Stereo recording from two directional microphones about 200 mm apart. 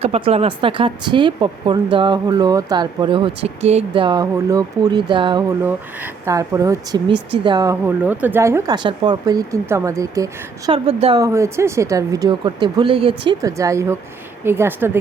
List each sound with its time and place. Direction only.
0.0 s speech: 30° right (ahead or behind)
10.7 s speech: 25° right (ahead or behind)
11.2 s speech: 15° right (ahead or behind)